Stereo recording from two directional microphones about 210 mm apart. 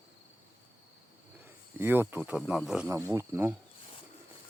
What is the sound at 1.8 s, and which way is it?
Speech, 10° right (ahead or behind).